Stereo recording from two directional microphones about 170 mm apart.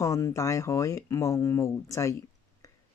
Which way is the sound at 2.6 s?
20° left (ahead or behind).